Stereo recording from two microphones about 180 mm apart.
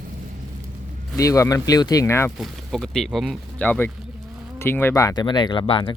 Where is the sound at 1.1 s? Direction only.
15° left (ahead or behind).